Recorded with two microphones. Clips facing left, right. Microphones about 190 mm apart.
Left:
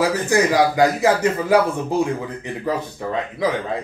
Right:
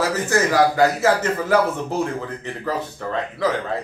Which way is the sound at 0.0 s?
15° left (ahead or behind).